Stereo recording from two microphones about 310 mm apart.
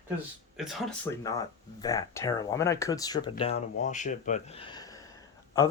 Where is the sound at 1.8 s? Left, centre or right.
Centre.